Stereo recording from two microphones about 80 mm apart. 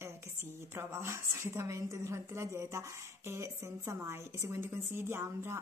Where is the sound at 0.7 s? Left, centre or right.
Right.